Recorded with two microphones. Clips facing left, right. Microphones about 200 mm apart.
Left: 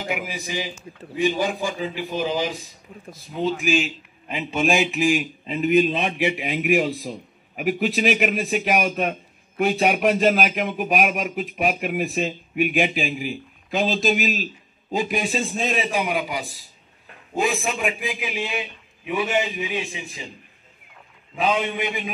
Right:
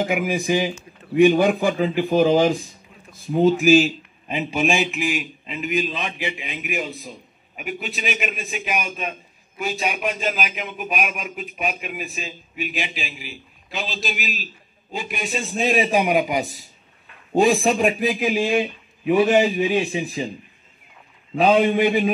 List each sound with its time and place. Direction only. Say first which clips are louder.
0.0 s a man's voice: right 7 dB; 50° right (ahead or behind)
3.7 s a man's voice: right 8 dB; 40° right (ahead or behind)
4.3 s a man's voice: right 3 dB; 15° right (ahead or behind)
4.6 s speech: left 1 dB; 5° left (ahead or behind)
4.9 s a man's voice: left 4 dB; 45° left (ahead or behind)
5.8 s a man's voice: left 6 dB; 60° left (ahead or behind)
8.1 s a man's voice: left 6 dB; 60° left (ahead or behind)
10.5 s a man's voice: left 5 dB; 50° left (ahead or behind)
11.8 s a man's voice: left 8 dB; 60° left (ahead or behind); by 15.2 s 40° left (ahead or behind)
15.5 s a man's voice: right 5 dB; 10° right (ahead or behind)
17.3 s a man's voice: right 7 dB; 35° right (ahead or behind)
21.4 s a man's voice: right 7 dB; 40° right (ahead or behind)